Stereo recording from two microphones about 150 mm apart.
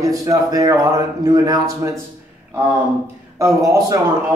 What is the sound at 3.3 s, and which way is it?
Speech, 20° right (ahead or behind).